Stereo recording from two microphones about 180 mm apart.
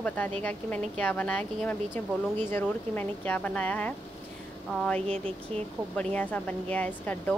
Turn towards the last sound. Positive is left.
turn(degrees=10)  # may be behind; listen again after turning